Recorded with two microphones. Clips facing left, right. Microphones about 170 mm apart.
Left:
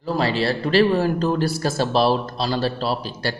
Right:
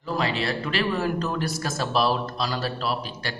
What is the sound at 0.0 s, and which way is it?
Speech, 35° left (ahead or behind).